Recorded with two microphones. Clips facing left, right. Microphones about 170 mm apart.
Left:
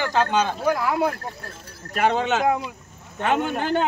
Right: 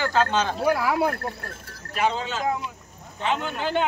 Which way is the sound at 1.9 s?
60° left (ahead or behind).